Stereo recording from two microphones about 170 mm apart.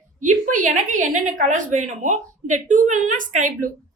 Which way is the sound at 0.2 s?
50° right (ahead or behind).